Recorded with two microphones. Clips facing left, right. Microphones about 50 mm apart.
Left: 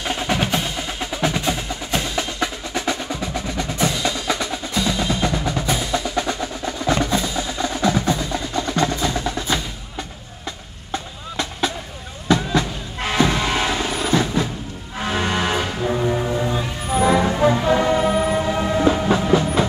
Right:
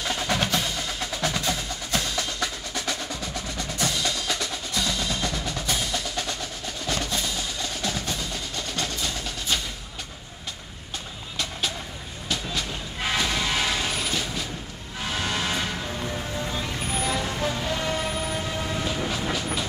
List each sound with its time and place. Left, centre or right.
0.0 s percussion: left
13.2 s music: left
18.0 s train: left